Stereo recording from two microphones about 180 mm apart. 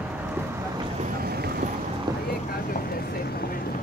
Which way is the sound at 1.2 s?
60° right (ahead or behind).